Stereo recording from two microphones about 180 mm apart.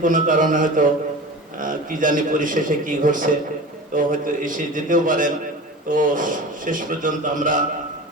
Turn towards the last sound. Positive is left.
turn(degrees=-45)  # may be behind; listen again after turning